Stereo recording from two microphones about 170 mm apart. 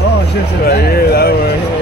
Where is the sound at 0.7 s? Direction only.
65° left (ahead or behind).